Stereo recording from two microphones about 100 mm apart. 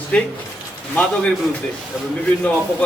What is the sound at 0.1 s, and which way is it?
Speech, 10° left (ahead or behind).